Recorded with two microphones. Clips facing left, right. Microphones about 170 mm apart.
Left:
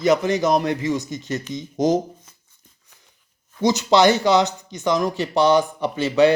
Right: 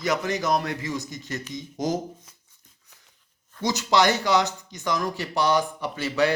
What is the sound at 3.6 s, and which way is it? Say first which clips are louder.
Speech: left 6 dB; 20° left (ahead or behind).